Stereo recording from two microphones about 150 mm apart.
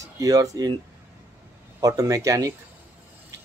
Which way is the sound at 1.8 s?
20° right (ahead or behind).